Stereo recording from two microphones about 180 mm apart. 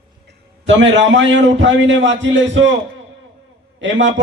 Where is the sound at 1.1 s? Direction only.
90° right.